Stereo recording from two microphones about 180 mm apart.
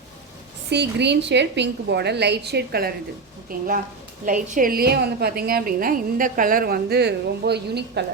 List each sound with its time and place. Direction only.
0.7 s a woman's voice: 70° right (ahead or behind)